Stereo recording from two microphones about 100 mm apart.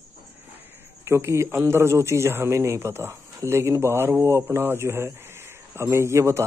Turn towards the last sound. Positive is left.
turn(degrees=-30)  # may be behind; listen again after turning